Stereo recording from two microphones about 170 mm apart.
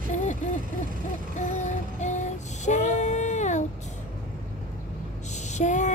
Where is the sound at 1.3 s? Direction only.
45° left (ahead or behind).